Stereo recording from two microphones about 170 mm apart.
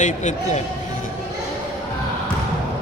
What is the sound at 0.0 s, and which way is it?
Speech, 45° left (ahead or behind).